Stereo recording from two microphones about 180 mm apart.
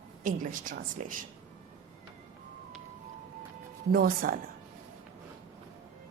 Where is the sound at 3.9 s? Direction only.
55° right (ahead or behind).